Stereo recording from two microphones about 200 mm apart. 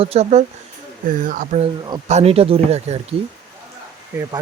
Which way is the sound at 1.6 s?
30° right (ahead or behind).